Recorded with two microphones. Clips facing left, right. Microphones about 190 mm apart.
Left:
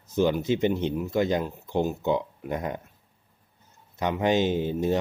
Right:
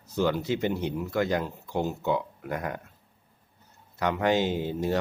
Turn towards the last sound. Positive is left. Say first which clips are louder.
# left 3 dB
turn(degrees=20)  # may be behind; listen again after turning